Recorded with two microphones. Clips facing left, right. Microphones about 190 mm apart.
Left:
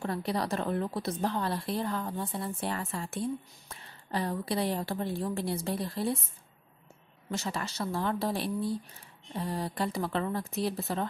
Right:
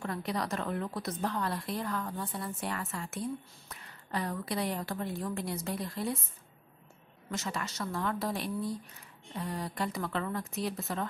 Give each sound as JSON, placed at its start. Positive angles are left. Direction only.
{"t": 0.0, "sound": "a woman's voice", "side_deg": 30}
{"t": 7.2, "sound": "speech", "side_deg": 30}